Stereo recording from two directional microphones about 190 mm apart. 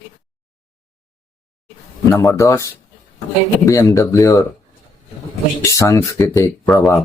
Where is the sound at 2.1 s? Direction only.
15° left (ahead or behind).